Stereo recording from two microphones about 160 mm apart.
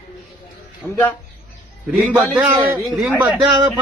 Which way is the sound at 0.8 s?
15° left (ahead or behind).